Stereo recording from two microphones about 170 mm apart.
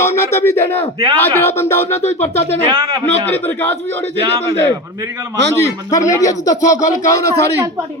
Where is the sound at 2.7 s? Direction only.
25° right (ahead or behind).